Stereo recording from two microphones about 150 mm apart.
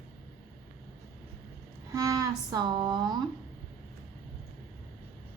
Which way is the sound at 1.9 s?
25° right (ahead or behind).